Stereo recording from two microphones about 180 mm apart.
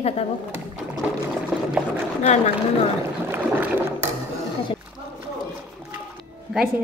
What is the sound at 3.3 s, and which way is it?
Boat, 10° right (ahead or behind).